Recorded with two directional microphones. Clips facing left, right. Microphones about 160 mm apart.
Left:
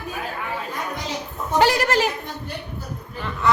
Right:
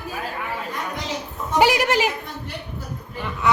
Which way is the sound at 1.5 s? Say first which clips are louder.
Even; 10° right (ahead or behind).